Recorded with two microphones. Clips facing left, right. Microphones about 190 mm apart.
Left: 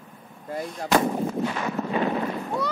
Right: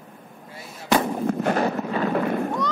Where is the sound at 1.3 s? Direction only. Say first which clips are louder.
Right 5 dB; 55° right (ahead or behind).